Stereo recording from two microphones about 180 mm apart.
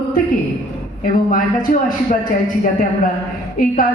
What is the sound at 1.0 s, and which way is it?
Speech, 50° left (ahead or behind).